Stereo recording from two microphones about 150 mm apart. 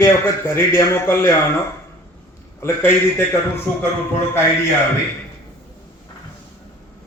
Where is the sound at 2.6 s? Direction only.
15° left (ahead or behind).